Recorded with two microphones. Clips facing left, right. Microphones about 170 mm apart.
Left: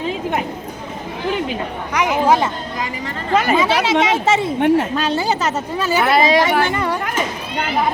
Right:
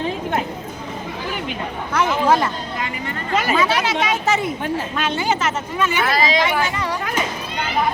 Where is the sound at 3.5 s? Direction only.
25° left (ahead or behind).